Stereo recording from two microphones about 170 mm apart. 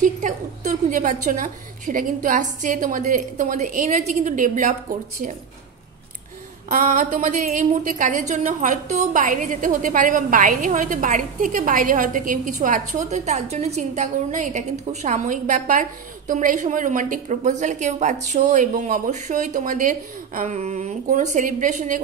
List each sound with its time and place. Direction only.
0.0 s a woman's voice: 50° right (ahead or behind)
6.7 s a woman's voice: 50° right (ahead or behind)